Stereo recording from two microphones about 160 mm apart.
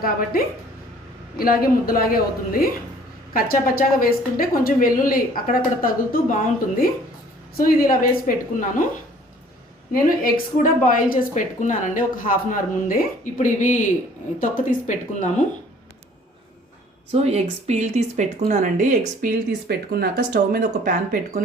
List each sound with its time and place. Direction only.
0.0 s a woman's voice: 65° left (ahead or behind)
9.9 s a woman's voice: 60° left (ahead or behind)
17.1 s speech: 40° right (ahead or behind)
19.6 s speech: 80° right; by 21.4 s 55° right (ahead or behind)